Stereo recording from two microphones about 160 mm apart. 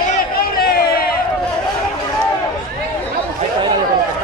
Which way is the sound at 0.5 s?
70° left (ahead or behind).